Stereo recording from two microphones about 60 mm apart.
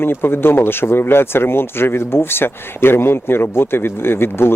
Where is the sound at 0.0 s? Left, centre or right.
Left.